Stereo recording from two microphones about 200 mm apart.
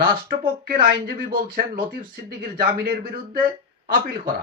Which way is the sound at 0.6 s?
45° right (ahead or behind).